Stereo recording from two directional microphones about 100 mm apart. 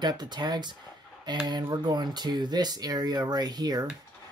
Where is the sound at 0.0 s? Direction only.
45° right (ahead or behind).